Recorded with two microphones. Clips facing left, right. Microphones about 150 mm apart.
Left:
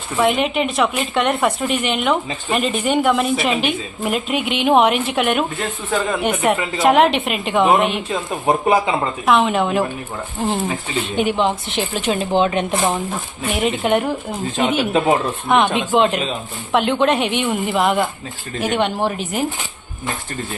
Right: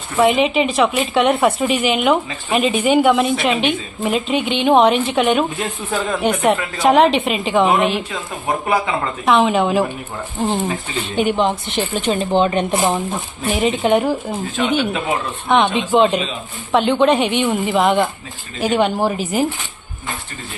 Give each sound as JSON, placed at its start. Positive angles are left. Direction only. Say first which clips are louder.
{"t": 0.2, "sound": "a woman's voice", "louder": "right 3 dB", "side_deg": 0}
{"t": 8.6, "sound": "speech", "louder": "left 1 dB", "side_deg": 25}
{"t": 9.2, "sound": "a woman's voice", "louder": "right 2 dB", "side_deg": 0}
{"t": 15.4, "sound": "a woman's voice", "louder": "right 2 dB", "side_deg": 0}